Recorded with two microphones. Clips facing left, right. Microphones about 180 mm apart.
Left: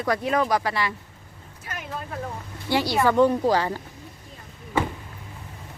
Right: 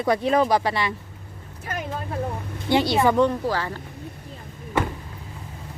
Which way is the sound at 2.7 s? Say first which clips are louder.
Right 2 dB; 20° right (ahead or behind).